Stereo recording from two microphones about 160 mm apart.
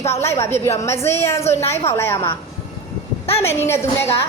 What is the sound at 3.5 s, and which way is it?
Speech, 15° left (ahead or behind).